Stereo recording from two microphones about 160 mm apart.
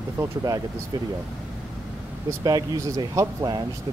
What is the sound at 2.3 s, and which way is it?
Speech, 25° right (ahead or behind).